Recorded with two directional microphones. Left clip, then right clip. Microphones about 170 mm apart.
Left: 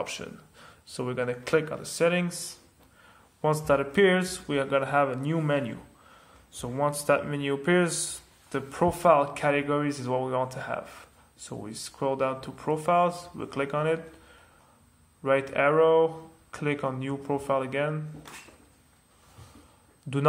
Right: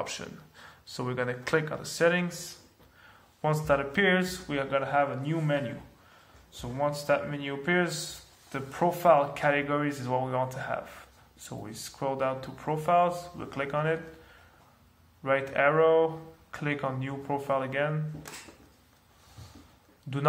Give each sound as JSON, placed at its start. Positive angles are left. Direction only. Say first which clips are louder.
{"t": 0.0, "sound": "speech", "louder": "left 2 dB", "side_deg": 20}
{"t": 15.2, "sound": "speech", "louder": "left 1 dB", "side_deg": 35}